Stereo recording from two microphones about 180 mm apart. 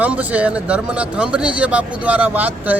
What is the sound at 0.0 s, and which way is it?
Speech, 10° right (ahead or behind).